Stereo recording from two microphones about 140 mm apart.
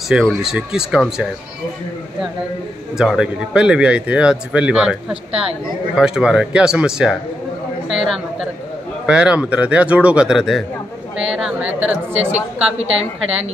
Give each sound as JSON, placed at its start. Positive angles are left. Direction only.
{"t": 0.1, "sound": "a man's voice", "side_deg": 0}
{"t": 3.0, "sound": "a man's voice", "side_deg": -5}
{"t": 5.9, "sound": "a man's voice", "side_deg": -5}
{"t": 12.3, "sound": "a woman's voice", "side_deg": -55}